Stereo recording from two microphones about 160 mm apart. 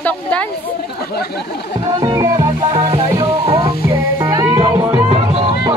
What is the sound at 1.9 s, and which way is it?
Music, 25° right (ahead or behind).